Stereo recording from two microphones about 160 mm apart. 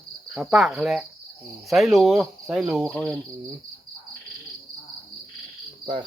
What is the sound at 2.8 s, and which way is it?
Cricket, 5° left (ahead or behind).